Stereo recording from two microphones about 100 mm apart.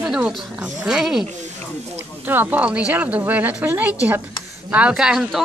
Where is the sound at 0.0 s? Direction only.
5° right (ahead or behind).